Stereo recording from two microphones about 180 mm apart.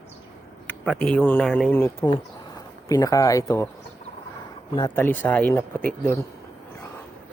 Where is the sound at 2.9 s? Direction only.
20° left (ahead or behind).